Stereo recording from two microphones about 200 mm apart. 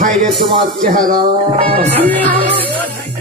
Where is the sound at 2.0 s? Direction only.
10° left (ahead or behind).